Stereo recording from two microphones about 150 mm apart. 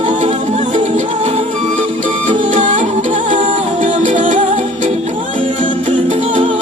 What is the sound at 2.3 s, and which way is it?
Music, 55° right (ahead or behind).